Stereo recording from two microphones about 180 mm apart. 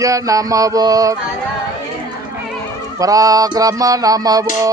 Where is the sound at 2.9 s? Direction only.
20° right (ahead or behind).